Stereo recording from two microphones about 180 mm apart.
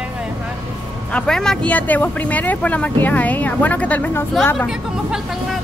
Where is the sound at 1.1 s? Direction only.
5° left (ahead or behind).